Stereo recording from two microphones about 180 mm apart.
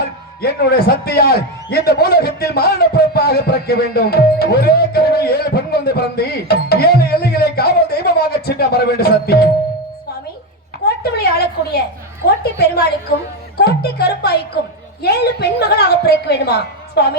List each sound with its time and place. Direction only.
0.4 s a man's voice: 65° left (ahead or behind)
10.8 s a woman's voice: 60° left (ahead or behind)